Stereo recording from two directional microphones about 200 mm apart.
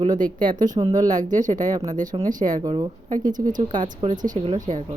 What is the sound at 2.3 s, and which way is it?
Speech, 40° right (ahead or behind).